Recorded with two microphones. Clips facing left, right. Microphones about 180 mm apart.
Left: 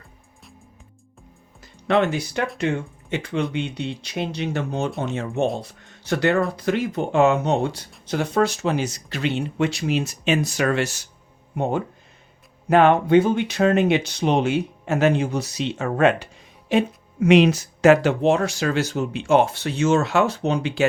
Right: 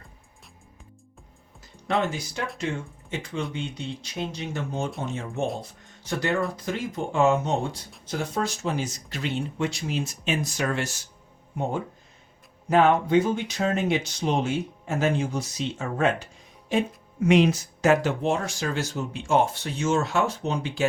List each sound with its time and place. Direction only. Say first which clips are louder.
1.6 s speech: left 6 dB; 70° left (ahead or behind)